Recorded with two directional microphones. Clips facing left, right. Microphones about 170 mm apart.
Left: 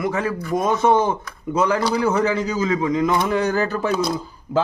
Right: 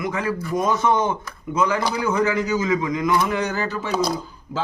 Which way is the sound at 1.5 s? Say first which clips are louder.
Left 2 dB; 35° left (ahead or behind).